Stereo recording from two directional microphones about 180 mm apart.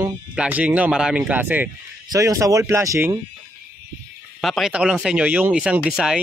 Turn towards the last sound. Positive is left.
turn(degrees=-5)  # may be behind; listen again after turning